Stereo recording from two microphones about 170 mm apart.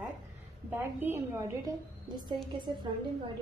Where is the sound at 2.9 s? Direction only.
25° right (ahead or behind).